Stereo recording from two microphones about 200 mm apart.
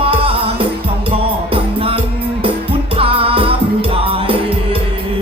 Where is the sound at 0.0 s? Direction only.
30° right (ahead or behind).